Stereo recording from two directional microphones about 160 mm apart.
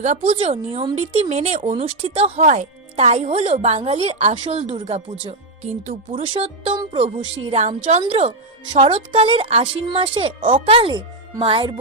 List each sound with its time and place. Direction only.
0.0 s a woman's voice: 40° right (ahead or behind)
6.1 s a woman's voice: 35° right (ahead or behind)
7.4 s a woman's voice: 40° right (ahead or behind)